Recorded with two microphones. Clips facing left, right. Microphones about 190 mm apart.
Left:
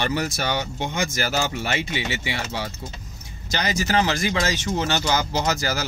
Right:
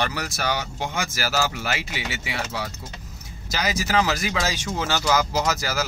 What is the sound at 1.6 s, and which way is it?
Speech, 5° right (ahead or behind).